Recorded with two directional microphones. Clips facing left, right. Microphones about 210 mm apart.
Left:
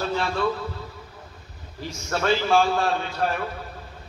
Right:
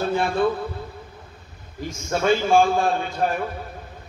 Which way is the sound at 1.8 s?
50° right (ahead or behind).